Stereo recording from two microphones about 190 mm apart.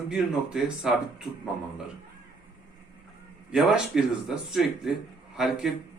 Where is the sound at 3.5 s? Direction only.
Centre (ahead or behind).